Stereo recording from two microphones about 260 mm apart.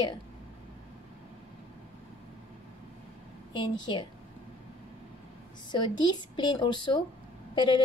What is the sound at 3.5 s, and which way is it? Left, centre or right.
Speech, centre.